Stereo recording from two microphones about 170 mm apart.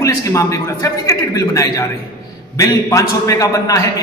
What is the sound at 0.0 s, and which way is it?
A man's voice, 20° left (ahead or behind).